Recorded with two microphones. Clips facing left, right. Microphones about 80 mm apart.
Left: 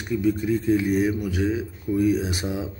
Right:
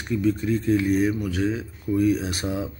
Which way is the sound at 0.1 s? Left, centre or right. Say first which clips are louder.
Even; centre.